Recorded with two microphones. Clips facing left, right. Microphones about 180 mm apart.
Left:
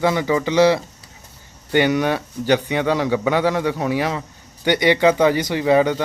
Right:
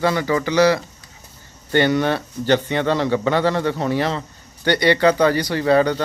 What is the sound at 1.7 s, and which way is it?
A man's voice, 10° left (ahead or behind).